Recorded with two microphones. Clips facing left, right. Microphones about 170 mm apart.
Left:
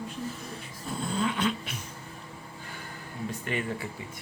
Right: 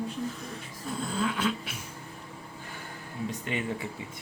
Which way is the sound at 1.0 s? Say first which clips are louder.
Left 1 dB; centre (ahead or behind).